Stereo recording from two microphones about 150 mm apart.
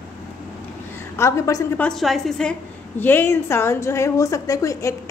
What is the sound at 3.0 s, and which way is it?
A woman's voice, 15° left (ahead or behind).